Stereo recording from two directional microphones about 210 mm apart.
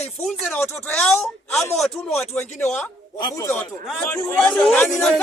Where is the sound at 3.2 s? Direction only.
15° left (ahead or behind).